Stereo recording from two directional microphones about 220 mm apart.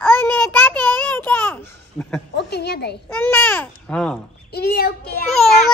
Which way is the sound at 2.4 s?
50° left (ahead or behind).